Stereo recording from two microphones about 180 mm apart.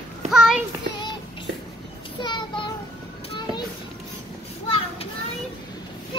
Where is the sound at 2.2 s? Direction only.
25° left (ahead or behind).